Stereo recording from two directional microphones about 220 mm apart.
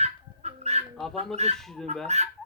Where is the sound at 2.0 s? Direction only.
30° right (ahead or behind).